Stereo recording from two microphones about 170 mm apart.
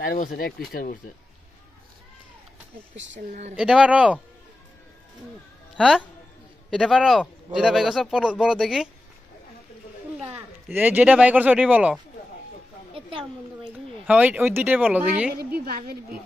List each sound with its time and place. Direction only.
0.0 s speech: 55° left (ahead or behind)
3.5 s speech: 5° right (ahead or behind)
5.8 s speech: 5° right (ahead or behind)
10.3 s speech: 10° right (ahead or behind)
14.0 s speech: 10° right (ahead or behind)
15.5 s a woman's voice: 65° right (ahead or behind)